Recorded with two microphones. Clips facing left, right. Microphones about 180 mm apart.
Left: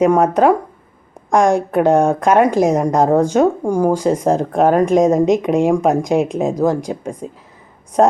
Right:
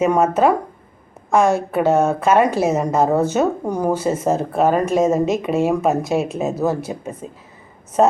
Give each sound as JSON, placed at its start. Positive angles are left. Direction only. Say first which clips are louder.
{"t": 0.0, "sound": "speech", "louder": "left 3 dB", "side_deg": 15}